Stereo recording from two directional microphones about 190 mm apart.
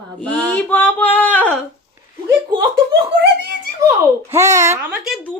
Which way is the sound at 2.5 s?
60° right (ahead or behind).